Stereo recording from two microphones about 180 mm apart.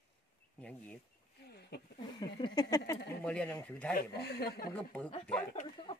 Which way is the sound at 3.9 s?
60° left (ahead or behind).